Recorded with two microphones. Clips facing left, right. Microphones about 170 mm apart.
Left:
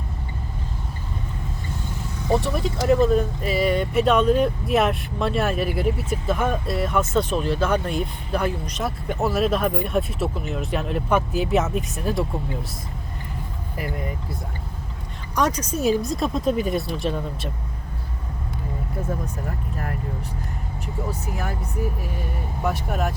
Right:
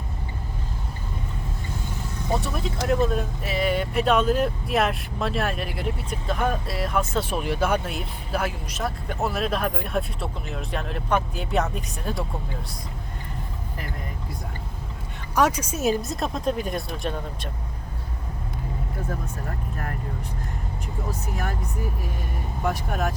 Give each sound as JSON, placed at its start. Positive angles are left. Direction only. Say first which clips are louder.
{"t": 2.4, "sound": "speech", "louder": "left 4 dB", "side_deg": 0}
{"t": 7.3, "sound": "speech", "louder": "left 2 dB", "side_deg": -10}
{"t": 15.4, "sound": "speech", "louder": "even", "side_deg": -10}
{"t": 22.6, "sound": "speech", "louder": "left 1 dB", "side_deg": 5}